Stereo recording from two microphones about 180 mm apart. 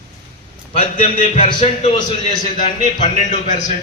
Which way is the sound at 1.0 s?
35° left (ahead or behind).